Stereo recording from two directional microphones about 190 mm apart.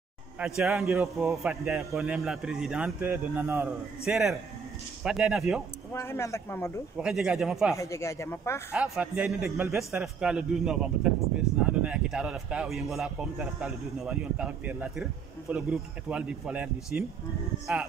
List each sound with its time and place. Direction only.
0.4 s a man's voice: 5° right (ahead or behind)
5.9 s speech: 15° left (ahead or behind)
7.0 s a man's voice: 5° right (ahead or behind)
7.7 s speech: 15° left (ahead or behind)
8.7 s a man's voice: 5° right (ahead or behind)